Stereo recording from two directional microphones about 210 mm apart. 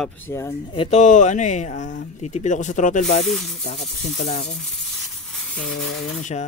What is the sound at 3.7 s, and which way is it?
Speech, 30° left (ahead or behind).